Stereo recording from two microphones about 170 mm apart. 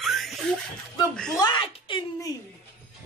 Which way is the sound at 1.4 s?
30° left (ahead or behind).